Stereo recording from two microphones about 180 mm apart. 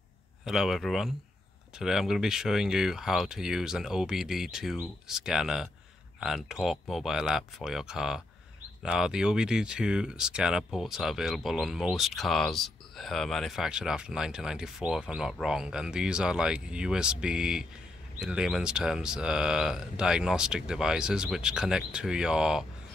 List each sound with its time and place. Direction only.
0.5 s speech: centre (ahead or behind)